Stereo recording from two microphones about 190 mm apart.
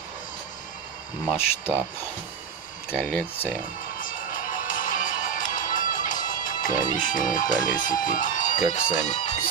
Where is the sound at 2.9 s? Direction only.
5° left (ahead or behind).